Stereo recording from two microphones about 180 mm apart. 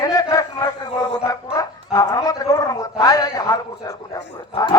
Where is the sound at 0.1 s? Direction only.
20° left (ahead or behind).